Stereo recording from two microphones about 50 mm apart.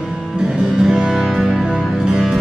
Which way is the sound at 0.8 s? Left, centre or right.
Centre.